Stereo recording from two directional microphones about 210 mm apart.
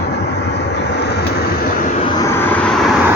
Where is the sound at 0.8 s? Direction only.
55° left (ahead or behind).